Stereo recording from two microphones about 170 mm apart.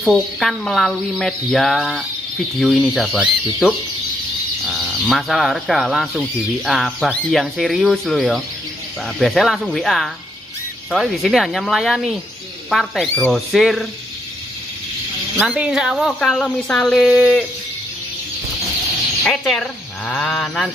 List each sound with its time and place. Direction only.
0.0 s speech: centre (ahead or behind)
15.4 s speech: 5° right (ahead or behind)
19.2 s speech: centre (ahead or behind)